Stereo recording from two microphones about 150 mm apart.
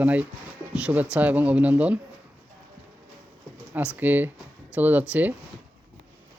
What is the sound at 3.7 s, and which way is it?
Speech, 10° right (ahead or behind).